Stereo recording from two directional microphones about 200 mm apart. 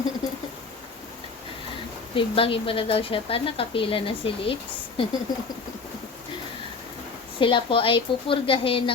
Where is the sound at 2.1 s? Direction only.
25° left (ahead or behind).